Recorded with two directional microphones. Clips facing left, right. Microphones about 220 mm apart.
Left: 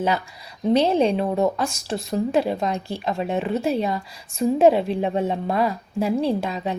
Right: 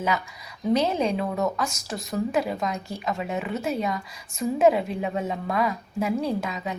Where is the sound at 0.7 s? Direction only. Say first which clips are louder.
Left 5 dB; 30° left (ahead or behind).